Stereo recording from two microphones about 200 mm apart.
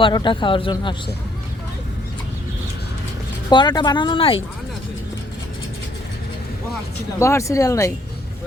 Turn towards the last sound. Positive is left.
turn(degrees=15)  # may be behind; listen again after turning